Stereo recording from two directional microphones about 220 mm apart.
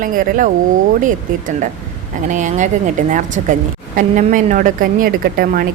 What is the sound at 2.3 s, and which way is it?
A woman's voice, 35° right (ahead or behind).